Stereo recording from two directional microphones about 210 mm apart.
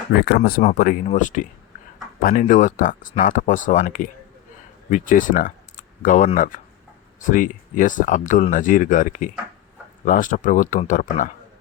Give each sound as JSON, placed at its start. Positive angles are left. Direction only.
{"t": 0.2, "sound": "speech", "side_deg": 45}
{"t": 0.6, "sound": "speech", "side_deg": 35}